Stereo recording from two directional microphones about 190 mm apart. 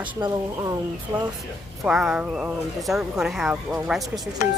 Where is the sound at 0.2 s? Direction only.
20° right (ahead or behind).